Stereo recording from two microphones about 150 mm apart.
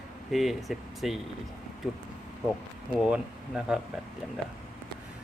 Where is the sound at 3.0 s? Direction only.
5° right (ahead or behind).